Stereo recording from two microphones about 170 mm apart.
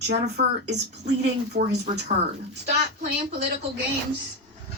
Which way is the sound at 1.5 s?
50° right (ahead or behind).